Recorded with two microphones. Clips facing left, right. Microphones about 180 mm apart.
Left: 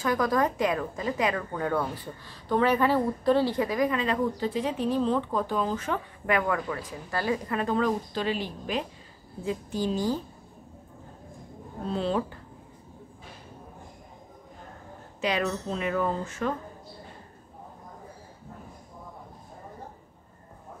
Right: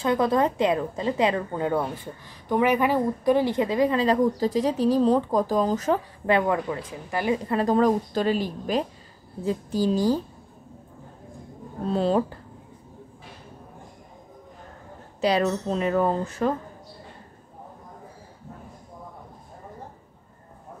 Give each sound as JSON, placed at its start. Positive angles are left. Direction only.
{"t": 0.0, "sound": "a woman's voice", "side_deg": -25}
{"t": 7.5, "sound": "a woman's voice", "side_deg": -40}
{"t": 11.9, "sound": "a woman's voice", "side_deg": -40}
{"t": 15.1, "sound": "a woman's voice", "side_deg": -35}